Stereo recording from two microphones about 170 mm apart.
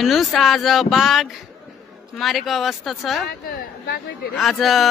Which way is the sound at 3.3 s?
60° left (ahead or behind).